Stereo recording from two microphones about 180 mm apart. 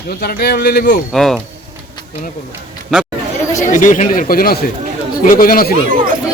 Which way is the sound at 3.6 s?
45° left (ahead or behind).